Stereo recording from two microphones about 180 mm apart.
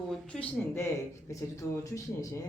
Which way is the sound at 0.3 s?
15° left (ahead or behind).